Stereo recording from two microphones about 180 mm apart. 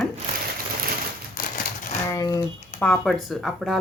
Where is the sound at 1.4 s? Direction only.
50° left (ahead or behind).